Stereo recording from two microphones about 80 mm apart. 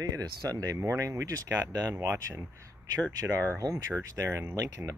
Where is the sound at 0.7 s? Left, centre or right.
Right.